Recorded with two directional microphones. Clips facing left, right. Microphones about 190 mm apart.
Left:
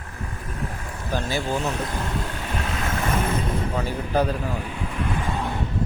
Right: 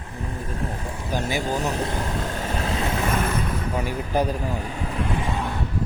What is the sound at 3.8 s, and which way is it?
Speech, 15° right (ahead or behind).